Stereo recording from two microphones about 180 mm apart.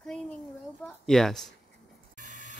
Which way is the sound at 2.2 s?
45° right (ahead or behind).